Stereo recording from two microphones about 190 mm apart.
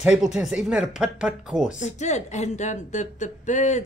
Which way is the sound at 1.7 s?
35° left (ahead or behind).